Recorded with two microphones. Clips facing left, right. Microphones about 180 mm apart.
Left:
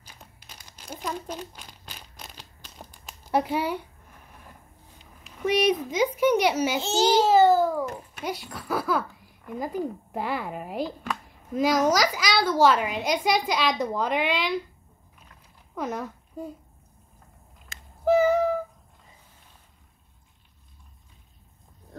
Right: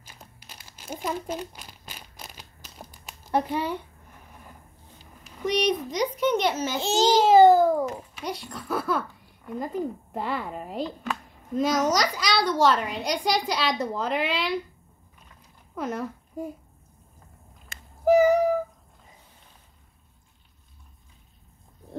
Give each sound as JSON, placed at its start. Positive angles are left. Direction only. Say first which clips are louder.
{"t": 0.0, "sound": "crumpling", "louder": "right 1 dB", "side_deg": -5}
{"t": 3.3, "sound": "a child's voice", "louder": "left 1 dB", "side_deg": 10}
{"t": 5.4, "sound": "a child's voice", "louder": "left 2 dB", "side_deg": 5}
{"t": 6.8, "sound": "a child's voice", "louder": "right 2 dB", "side_deg": -15}
{"t": 8.2, "sound": "a child's voice", "louder": "left 4 dB", "side_deg": 5}
{"t": 15.7, "sound": "a child's voice", "louder": "right 1 dB", "side_deg": 0}
{"t": 18.0, "sound": "meow", "louder": "right 2 dB", "side_deg": -10}